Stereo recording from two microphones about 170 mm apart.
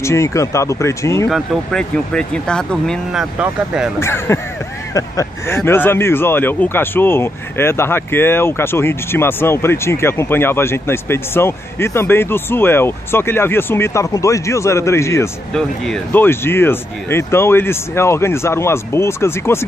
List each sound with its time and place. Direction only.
0.0 s speech: 15° left (ahead or behind)
1.3 s speech: centre (ahead or behind)
4.0 s speech: 15° left (ahead or behind)
15.5 s speech: 5° left (ahead or behind)